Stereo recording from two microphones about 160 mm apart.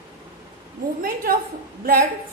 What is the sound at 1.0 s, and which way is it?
Speech, 65° right (ahead or behind).